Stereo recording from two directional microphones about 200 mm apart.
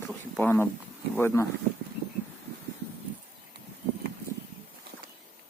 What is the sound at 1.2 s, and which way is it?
Speech, 10° left (ahead or behind).